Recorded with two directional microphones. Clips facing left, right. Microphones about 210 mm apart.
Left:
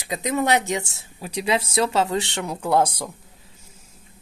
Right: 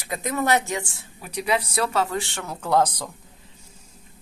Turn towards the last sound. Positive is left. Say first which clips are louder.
# left 1 dB
turn(degrees=10)  # may be behind; listen again after turning